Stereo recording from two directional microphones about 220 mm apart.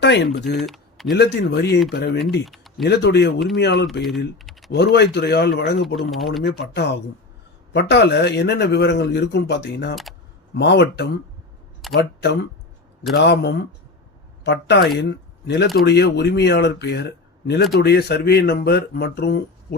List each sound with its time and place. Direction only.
0.0 s speech: 50° left (ahead or behind)
0.5 s speech: centre (ahead or behind)
1.1 s a man's voice: 50° left (ahead or behind)
2.4 s a sound: centre (ahead or behind)
2.8 s a man's voice: 50° left (ahead or behind)
6.0 s speech: centre (ahead or behind)
6.7 s a man's voice: 50° left (ahead or behind)
9.9 s speech: centre (ahead or behind)
10.5 s a man's voice: 50° left (ahead or behind)